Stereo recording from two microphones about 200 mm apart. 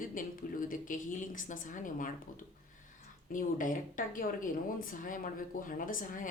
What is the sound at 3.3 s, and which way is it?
Speech, 40° left (ahead or behind).